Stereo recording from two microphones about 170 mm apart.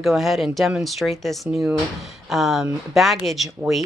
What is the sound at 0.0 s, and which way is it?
Speech, centre (ahead or behind).